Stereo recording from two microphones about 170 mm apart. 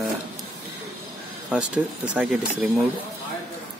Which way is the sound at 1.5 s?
5° right (ahead or behind).